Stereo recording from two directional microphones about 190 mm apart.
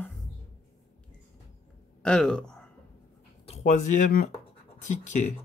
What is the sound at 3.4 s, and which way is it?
Speech, 35° left (ahead or behind).